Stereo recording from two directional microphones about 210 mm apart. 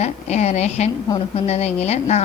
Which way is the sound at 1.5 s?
30° left (ahead or behind).